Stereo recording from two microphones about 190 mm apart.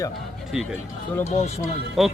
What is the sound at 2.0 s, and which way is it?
Speech, centre (ahead or behind).